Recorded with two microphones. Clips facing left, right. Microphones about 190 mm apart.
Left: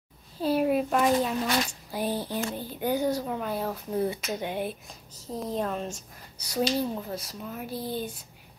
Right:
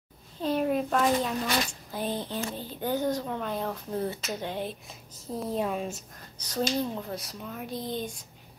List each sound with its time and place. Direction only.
0.4 s a sound: 10° left (ahead or behind)
1.9 s speech: 10° left (ahead or behind)
4.8 s speech: 5° right (ahead or behind)
6.3 s speech: 10° left (ahead or behind)